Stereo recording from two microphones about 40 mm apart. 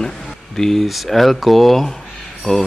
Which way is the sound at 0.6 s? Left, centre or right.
Centre.